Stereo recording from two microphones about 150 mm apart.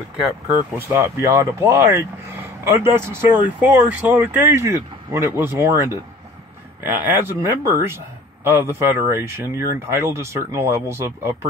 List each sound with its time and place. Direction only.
0.7 s speech: 15° right (ahead or behind)